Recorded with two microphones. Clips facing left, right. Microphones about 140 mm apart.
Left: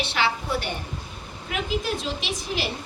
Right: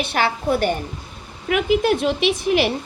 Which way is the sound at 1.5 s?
65° right (ahead or behind).